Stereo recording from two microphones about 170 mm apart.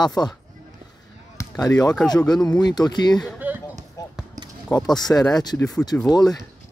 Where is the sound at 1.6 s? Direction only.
20° left (ahead or behind).